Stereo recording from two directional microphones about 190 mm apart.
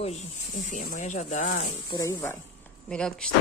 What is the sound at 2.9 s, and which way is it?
Speech, 5° left (ahead or behind).